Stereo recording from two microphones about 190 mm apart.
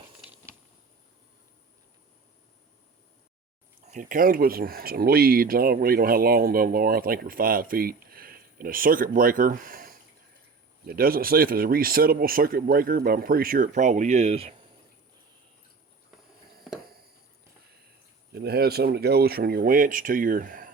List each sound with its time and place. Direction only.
3.8 s speech: 45° right (ahead or behind)
18.3 s speech: 55° right (ahead or behind)